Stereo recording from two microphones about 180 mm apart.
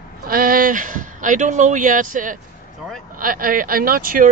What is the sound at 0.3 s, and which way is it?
Speech, 50° right (ahead or behind).